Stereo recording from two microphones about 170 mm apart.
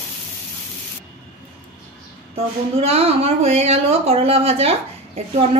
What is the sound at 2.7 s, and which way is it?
A woman's voice, 35° right (ahead or behind).